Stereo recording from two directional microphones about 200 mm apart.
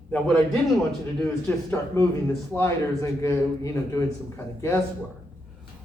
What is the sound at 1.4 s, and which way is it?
Speech, 10° left (ahead or behind).